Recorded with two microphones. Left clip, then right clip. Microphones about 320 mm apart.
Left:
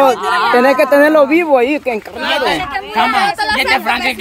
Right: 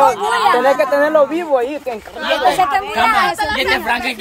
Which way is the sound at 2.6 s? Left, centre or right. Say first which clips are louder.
Right 1 dB; centre.